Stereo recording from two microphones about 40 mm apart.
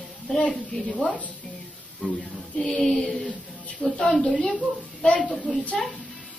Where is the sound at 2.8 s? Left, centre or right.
Centre.